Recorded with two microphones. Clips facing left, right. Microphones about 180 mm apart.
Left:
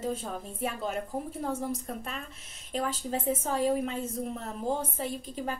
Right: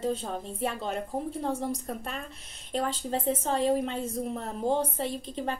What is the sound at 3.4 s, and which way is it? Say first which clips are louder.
Speech: right 1 dB; 30° right (ahead or behind).